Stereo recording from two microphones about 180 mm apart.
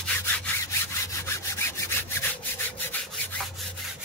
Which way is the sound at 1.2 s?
15° left (ahead or behind).